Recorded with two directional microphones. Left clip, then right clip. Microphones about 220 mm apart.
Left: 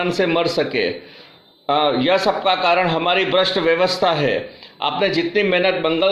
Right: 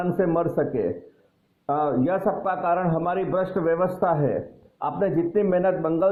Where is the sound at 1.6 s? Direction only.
10° left (ahead or behind).